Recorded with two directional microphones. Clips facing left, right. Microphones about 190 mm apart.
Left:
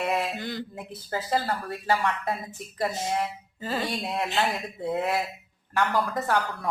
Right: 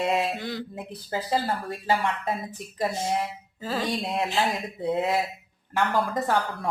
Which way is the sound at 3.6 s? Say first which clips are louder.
Right 2 dB; centre (ahead or behind).